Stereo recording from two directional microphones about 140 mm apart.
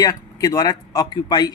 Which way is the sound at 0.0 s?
25° left (ahead or behind).